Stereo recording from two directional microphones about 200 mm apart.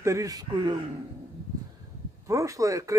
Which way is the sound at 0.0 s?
15° right (ahead or behind).